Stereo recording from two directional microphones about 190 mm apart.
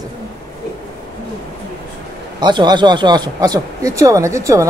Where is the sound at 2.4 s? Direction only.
25° right (ahead or behind).